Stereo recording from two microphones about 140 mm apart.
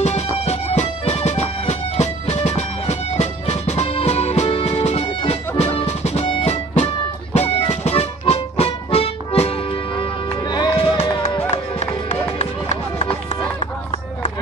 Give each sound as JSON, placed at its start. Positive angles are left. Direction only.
{"t": 0.0, "sound": "music", "side_deg": 50}
{"t": 11.5, "sound": "music", "side_deg": 55}